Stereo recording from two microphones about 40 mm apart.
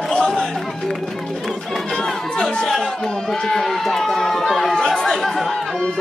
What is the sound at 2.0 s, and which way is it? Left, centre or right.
Chatter, centre.